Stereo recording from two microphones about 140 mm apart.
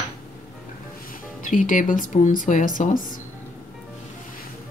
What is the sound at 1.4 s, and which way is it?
Speech, 70° left (ahead or behind).